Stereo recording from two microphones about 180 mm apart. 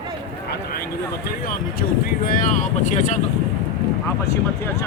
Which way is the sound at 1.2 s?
55° left (ahead or behind).